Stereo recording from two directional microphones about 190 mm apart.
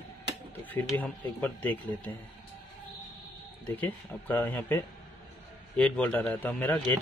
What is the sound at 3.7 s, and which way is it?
Speech, 10° left (ahead or behind).